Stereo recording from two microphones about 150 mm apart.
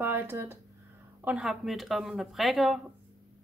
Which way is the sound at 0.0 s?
15° right (ahead or behind).